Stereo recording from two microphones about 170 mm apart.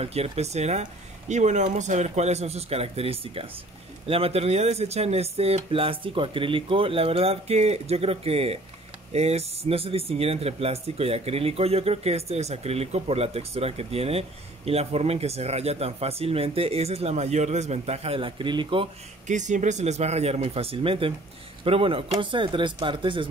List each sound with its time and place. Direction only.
0.0 s speech: 35° right (ahead or behind)
19.2 s speech: 45° right (ahead or behind); by 23.2 s 30° right (ahead or behind)